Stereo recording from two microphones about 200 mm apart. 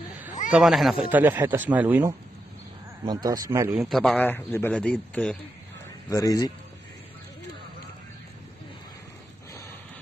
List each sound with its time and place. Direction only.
0.5 s speech: centre (ahead or behind)
3.7 s a man's voice: centre (ahead or behind)
6.0 s a man's voice: 15° left (ahead or behind)